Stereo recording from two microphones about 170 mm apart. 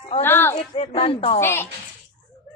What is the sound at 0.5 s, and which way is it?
Speech, 35° left (ahead or behind).